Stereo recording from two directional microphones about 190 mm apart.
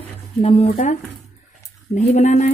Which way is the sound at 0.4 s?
30° left (ahead or behind).